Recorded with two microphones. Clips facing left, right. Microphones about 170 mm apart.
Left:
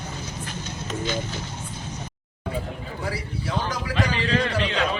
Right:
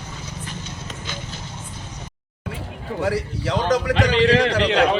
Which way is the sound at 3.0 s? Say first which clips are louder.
Right 9 dB; 80° right.